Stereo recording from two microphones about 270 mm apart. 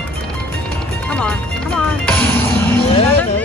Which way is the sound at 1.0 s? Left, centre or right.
Centre.